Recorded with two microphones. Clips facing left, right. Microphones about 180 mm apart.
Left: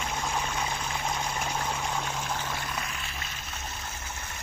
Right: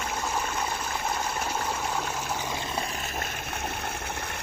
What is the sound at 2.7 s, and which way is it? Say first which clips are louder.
Water: right 5 dB; 35° right (ahead or behind).